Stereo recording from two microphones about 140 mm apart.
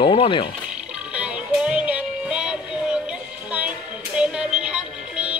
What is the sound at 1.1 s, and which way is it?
Music, 10° right (ahead or behind).